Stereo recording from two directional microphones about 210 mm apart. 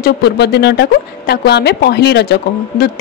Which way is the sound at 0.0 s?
50° left (ahead or behind).